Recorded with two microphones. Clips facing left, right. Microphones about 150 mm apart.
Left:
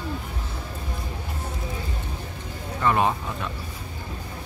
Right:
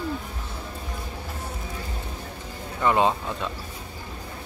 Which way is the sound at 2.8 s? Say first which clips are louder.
Right 1 dB; 20° right (ahead or behind).